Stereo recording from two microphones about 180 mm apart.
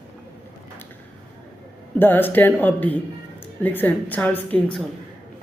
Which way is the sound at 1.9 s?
10° left (ahead or behind).